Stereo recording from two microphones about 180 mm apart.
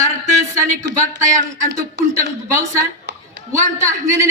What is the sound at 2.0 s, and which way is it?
Speech, 70° right (ahead or behind).